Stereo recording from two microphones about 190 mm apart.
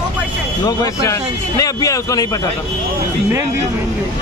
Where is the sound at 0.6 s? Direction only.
15° left (ahead or behind).